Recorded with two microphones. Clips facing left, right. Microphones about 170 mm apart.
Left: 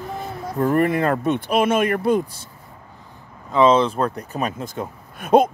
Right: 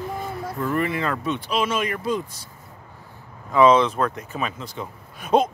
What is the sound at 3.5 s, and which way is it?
Speech, 25° left (ahead or behind).